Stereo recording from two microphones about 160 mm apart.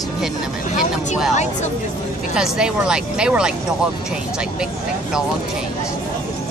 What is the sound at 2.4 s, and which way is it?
Speech, 5° right (ahead or behind).